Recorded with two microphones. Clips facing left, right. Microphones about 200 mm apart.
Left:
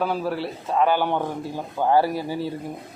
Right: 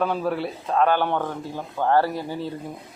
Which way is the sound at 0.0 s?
5° left (ahead or behind).